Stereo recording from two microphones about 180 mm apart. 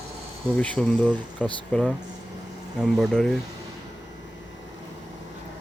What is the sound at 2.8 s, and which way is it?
Speech, centre (ahead or behind).